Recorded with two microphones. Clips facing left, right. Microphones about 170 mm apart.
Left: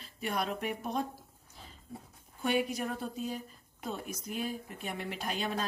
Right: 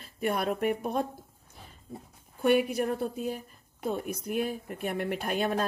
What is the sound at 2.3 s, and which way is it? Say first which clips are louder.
A woman's voice: right 7 dB; 55° right (ahead or behind).